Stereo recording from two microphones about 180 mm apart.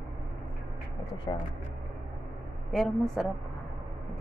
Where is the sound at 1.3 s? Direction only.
25° left (ahead or behind).